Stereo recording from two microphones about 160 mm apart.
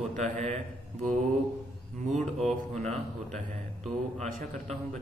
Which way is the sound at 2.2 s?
Centre (ahead or behind).